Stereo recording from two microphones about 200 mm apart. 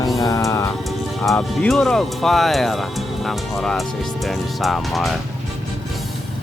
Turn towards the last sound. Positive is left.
turn(degrees=0)  # may be behind; listen again after turning